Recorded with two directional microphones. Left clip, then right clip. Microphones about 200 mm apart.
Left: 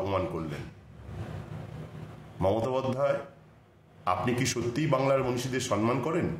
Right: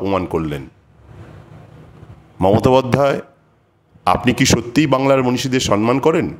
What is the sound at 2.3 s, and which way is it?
A man's voice, 50° right (ahead or behind).